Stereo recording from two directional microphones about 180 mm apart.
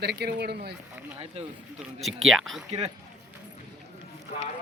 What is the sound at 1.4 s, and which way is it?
Speech, 35° right (ahead or behind).